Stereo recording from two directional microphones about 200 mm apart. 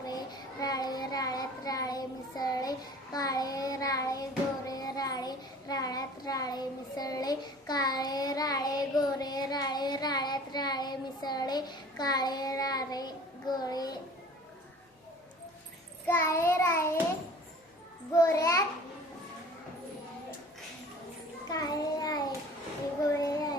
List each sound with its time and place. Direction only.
0.6 s child singing: 20° left (ahead or behind)
13.6 s a sound: 20° left (ahead or behind)
16.0 s child singing: 10° left (ahead or behind)
18.1 s child singing: 15° left (ahead or behind)
21.5 s child singing: 20° left (ahead or behind)
23.2 s a sound: 20° left (ahead or behind)